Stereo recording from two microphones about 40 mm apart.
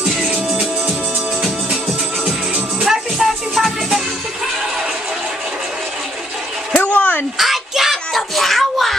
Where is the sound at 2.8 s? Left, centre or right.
Centre.